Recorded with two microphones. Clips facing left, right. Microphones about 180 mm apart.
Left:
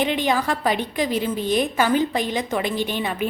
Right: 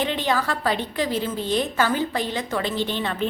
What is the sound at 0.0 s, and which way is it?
A woman's voice, 15° left (ahead or behind).